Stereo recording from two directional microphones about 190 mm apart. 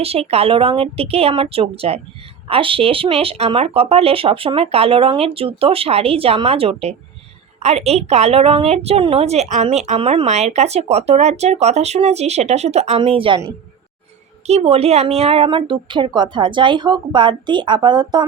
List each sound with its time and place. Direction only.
0.0 s a woman's voice: 30° right (ahead or behind)